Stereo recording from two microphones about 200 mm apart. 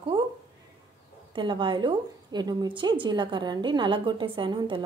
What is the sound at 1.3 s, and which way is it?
A woman's voice, 25° right (ahead or behind).